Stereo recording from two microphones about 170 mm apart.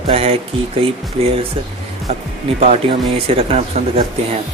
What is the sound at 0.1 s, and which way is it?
Speech, 35° right (ahead or behind).